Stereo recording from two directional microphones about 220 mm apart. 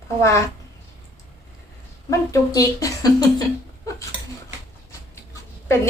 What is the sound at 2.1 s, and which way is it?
Speech, 15° left (ahead or behind).